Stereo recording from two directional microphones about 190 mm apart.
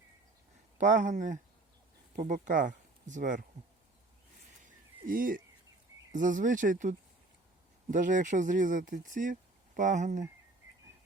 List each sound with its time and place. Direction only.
0.8 s speech: 40° right (ahead or behind)
5.0 s speech: 45° right (ahead or behind)